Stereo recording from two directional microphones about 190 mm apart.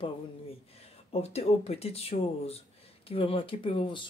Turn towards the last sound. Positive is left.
turn(degrees=25)  # may be behind; listen again after turning